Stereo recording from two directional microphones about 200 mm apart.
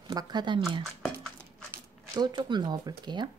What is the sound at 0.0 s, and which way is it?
Speech, 20° right (ahead or behind).